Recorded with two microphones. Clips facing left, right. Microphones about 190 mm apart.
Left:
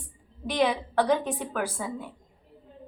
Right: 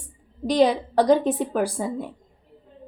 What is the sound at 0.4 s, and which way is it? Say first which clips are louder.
Speech: right 7 dB; 40° right (ahead or behind).